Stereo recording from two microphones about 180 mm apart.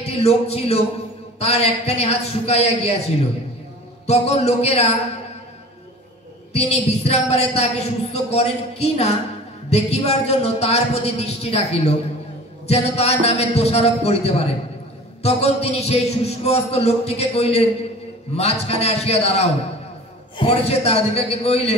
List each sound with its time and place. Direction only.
0.0 s speech: 35° left (ahead or behind)
4.0 s speech: 35° left (ahead or behind)
6.5 s speech: 35° left (ahead or behind)